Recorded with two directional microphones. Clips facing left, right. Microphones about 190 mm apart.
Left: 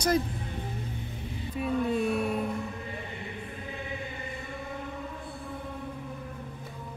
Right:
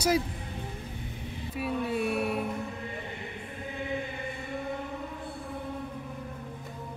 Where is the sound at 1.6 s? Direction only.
5° right (ahead or behind).